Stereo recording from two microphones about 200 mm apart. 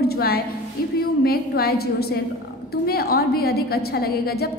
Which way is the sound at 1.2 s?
50° left (ahead or behind).